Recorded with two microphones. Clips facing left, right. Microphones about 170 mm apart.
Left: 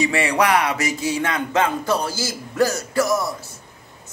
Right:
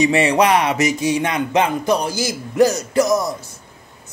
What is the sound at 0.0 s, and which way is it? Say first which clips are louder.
A woman's voice: right 4 dB; 20° right (ahead or behind).